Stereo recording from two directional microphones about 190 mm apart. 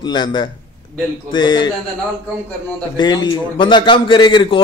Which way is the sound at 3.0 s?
25° left (ahead or behind).